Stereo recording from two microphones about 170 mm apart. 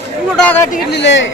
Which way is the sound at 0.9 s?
90° left.